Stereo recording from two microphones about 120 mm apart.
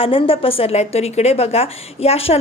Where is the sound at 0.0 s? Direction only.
50° left (ahead or behind).